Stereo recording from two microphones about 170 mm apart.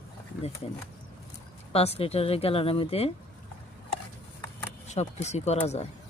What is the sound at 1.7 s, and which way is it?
Speech, 35° left (ahead or behind).